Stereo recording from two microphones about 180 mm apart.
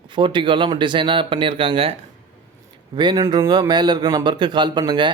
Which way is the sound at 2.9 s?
25° right (ahead or behind).